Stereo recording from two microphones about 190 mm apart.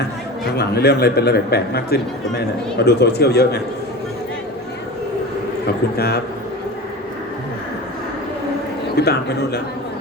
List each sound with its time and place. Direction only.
0.4 s a man's voice: 60° left (ahead or behind)
5.6 s a man's voice: 55° left (ahead or behind)
9.0 s a man's voice: 60° left (ahead or behind)